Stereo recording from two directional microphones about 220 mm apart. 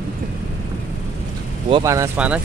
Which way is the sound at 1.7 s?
15° right (ahead or behind).